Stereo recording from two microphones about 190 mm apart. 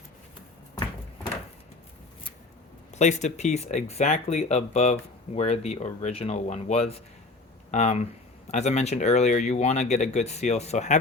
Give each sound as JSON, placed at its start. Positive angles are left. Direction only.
{"t": 2.9, "sound": "speech", "side_deg": 35}